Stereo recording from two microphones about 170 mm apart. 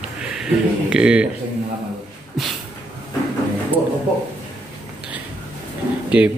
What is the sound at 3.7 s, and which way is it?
Speech, 10° right (ahead or behind).